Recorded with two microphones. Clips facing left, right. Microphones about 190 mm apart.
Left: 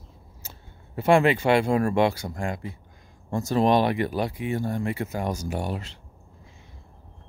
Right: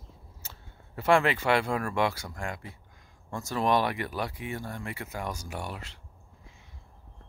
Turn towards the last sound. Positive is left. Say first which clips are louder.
# left 8 dB
turn(degrees=30)  # may be behind; listen again after turning